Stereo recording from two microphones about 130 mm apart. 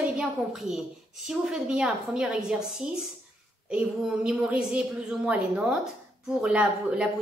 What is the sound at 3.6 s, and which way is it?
A woman's voice, 5° right (ahead or behind).